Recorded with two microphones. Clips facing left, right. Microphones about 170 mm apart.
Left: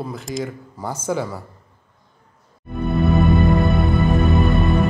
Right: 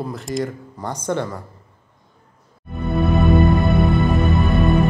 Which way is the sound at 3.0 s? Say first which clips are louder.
Right 1 dB; centre (ahead or behind).